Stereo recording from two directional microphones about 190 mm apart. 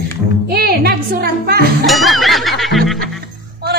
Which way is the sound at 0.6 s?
55° right (ahead or behind).